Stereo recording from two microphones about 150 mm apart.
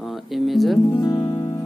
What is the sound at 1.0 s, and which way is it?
Music, 25° left (ahead or behind).